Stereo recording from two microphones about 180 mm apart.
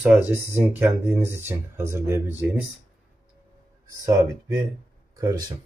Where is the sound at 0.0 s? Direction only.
10° right (ahead or behind).